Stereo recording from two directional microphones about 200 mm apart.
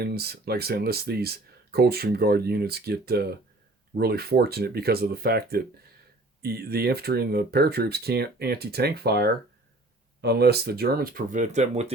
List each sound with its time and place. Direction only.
0.0 s speech: 50° right (ahead or behind); by 11.9 s 35° right (ahead or behind)